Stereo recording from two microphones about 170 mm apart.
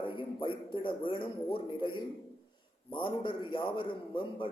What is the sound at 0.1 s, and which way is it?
A man's voice, 30° left (ahead or behind).